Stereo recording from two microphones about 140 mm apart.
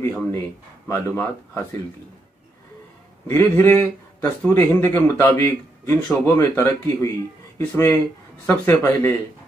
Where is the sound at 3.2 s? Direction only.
15° left (ahead or behind).